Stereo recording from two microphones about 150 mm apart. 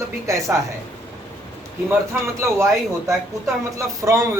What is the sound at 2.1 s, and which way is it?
Speech, 20° right (ahead or behind).